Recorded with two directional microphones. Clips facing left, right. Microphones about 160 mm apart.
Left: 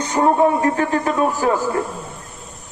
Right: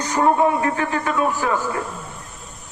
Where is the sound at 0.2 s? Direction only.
25° left (ahead or behind).